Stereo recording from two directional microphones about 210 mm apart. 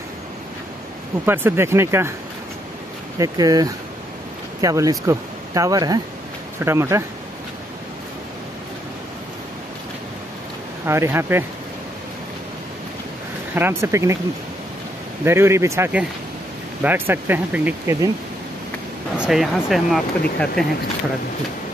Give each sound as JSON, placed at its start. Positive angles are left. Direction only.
{"t": 1.2, "sound": "speech", "side_deg": -10}
{"t": 3.2, "sound": "speech", "side_deg": -15}
{"t": 10.9, "sound": "speech", "side_deg": -10}
{"t": 13.6, "sound": "speech", "side_deg": -10}
{"t": 15.2, "sound": "speech", "side_deg": -10}
{"t": 19.1, "sound": "speech", "side_deg": -5}